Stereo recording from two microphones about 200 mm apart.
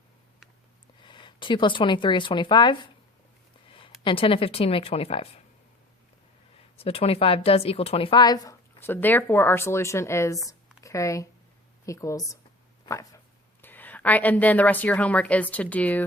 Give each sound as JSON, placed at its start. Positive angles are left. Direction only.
{"t": 1.0, "sound": "speech", "side_deg": 25}
{"t": 3.7, "sound": "a sound", "side_deg": 25}
{"t": 4.0, "sound": "speech", "side_deg": 25}
{"t": 6.7, "sound": "speech", "side_deg": 30}
{"t": 12.8, "sound": "a sound", "side_deg": 15}
{"t": 13.6, "sound": "speech", "side_deg": 10}